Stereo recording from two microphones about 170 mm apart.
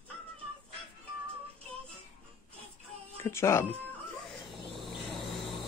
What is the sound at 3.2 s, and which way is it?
Speech, 15° left (ahead or behind).